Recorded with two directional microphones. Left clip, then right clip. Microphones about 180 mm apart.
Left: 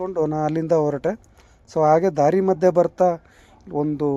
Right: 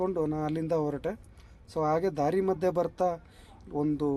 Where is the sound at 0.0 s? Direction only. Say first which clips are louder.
Left 8 dB; 30° left (ahead or behind).